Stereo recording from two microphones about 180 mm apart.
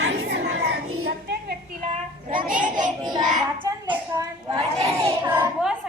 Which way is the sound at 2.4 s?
50° right (ahead or behind).